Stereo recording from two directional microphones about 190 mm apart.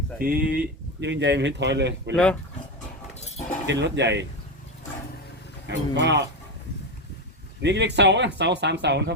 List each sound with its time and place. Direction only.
0.2 s speech: 50° right (ahead or behind); by 2.1 s 65° right (ahead or behind)
2.1 s speech: 5° left (ahead or behind)
3.2 s keys jangling: 35° left (ahead or behind)
3.7 s speech: 65° right (ahead or behind)
5.9 s speech: 65° right (ahead or behind)
7.6 s speech: 65° right (ahead or behind)